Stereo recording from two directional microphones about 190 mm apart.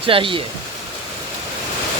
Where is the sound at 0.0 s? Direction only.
30° right (ahead or behind).